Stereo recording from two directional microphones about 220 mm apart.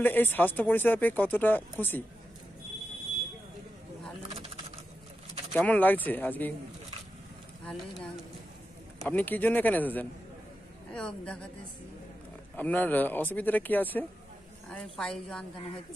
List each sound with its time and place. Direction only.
0.0 s speech: 10° left (ahead or behind)
5.5 s speech: 5° left (ahead or behind)
7.6 s a woman's voice: 5° left (ahead or behind)
12.5 s a woman's voice: 5° left (ahead or behind)